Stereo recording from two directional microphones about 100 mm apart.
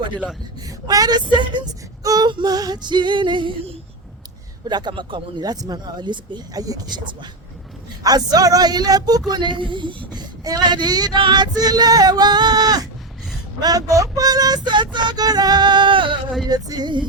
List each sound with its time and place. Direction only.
0.9 s speech: 40° right (ahead or behind)
2.0 s music: 45° right (ahead or behind)
4.7 s music: 50° right (ahead or behind)
10.2 s music: 40° right (ahead or behind)
16.5 s music: 40° right (ahead or behind)